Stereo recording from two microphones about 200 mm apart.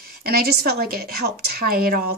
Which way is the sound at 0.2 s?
50° right (ahead or behind).